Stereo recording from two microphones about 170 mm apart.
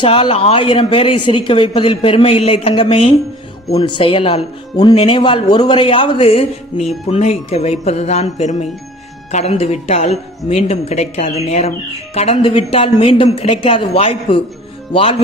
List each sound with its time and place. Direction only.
0.0 s speech: 30° left (ahead or behind)